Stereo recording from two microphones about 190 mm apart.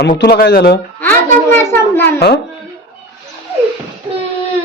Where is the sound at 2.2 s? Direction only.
60° left (ahead or behind).